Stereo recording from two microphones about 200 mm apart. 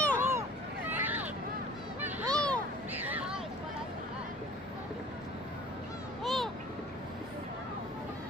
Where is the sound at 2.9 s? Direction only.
10° right (ahead or behind).